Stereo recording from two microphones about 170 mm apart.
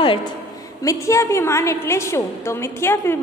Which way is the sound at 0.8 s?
20° left (ahead or behind).